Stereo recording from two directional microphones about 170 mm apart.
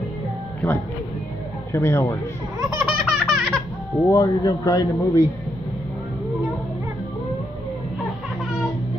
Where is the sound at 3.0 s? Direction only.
Centre (ahead or behind).